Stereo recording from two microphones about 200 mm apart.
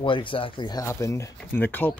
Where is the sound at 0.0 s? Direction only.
25° left (ahead or behind).